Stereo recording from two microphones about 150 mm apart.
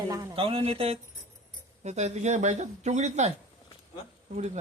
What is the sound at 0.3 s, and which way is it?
Speech, 40° right (ahead or behind).